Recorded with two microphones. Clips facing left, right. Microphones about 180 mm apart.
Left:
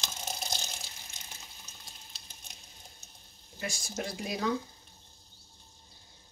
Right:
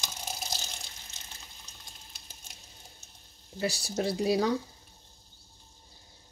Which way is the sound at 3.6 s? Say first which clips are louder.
Right 6 dB; 35° right (ahead or behind).